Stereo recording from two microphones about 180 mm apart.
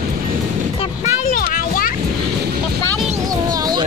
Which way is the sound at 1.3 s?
50° left (ahead or behind).